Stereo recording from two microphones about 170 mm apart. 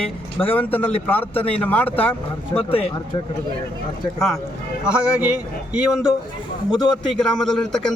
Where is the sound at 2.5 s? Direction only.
35° left (ahead or behind).